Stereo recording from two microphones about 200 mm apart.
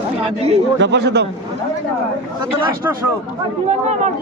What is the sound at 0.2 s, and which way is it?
Speech, 30° right (ahead or behind).